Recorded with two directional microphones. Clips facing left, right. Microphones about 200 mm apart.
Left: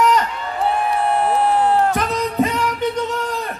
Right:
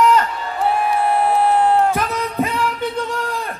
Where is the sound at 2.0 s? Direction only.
15° left (ahead or behind).